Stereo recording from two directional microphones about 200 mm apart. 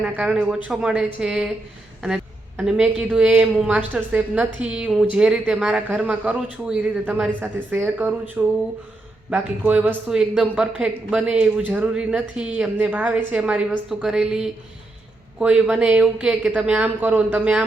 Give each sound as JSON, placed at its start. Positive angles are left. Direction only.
{"t": 0.0, "sound": "speech", "side_deg": -5}
{"t": 2.0, "sound": "a sound", "side_deg": -5}
{"t": 3.0, "sound": "speech", "side_deg": -5}